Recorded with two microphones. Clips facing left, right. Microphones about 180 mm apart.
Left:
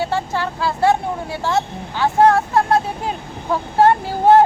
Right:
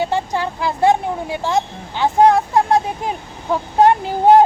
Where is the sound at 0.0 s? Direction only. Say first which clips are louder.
Right 1 dB; 20° right (ahead or behind).